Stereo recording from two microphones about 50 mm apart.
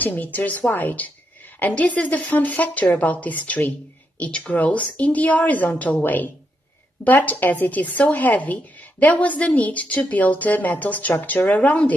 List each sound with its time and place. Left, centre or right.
0.0 s a woman's voice: left
4.2 s a woman's voice: left